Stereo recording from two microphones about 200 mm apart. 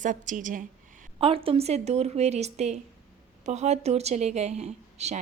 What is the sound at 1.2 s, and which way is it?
Speech, 25° right (ahead or behind).